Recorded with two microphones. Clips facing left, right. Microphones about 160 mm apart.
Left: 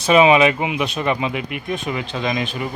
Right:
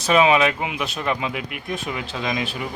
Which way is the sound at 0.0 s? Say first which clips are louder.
Left 4 dB; 5° left (ahead or behind).